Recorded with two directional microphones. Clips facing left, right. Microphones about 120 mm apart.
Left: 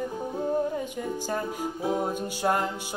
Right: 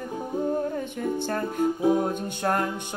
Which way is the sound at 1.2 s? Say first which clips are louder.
Right 7 dB; 10° left (ahead or behind).